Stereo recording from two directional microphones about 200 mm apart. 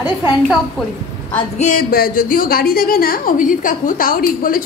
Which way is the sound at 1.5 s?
40° left (ahead or behind).